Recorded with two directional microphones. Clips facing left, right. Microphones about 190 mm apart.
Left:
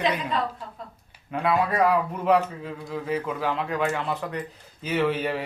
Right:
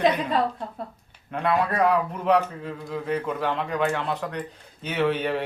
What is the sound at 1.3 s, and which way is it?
Speech, centre (ahead or behind).